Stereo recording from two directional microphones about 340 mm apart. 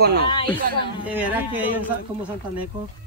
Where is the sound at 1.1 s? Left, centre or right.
Centre.